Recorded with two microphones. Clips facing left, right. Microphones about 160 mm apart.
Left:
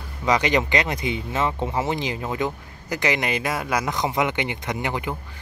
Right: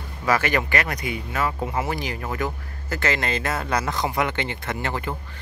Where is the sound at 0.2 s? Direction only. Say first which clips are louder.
Left 2 dB; 20° left (ahead or behind).